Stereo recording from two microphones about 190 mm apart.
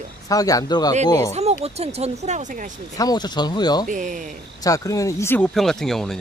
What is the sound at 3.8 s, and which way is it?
Speech, 40° right (ahead or behind).